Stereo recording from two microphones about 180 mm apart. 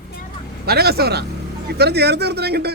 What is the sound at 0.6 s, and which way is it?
A man's voice, 60° right (ahead or behind).